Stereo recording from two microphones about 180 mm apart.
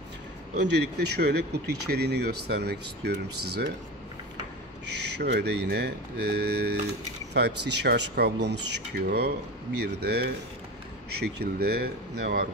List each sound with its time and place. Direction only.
0.6 s speech: 70° right (ahead or behind)
5.2 s speech: 65° right (ahead or behind)